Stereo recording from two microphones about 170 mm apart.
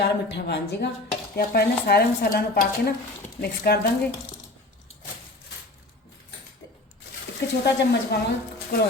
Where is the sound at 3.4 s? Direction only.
65° left (ahead or behind).